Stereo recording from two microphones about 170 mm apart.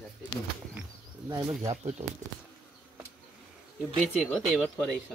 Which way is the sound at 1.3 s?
20° right (ahead or behind).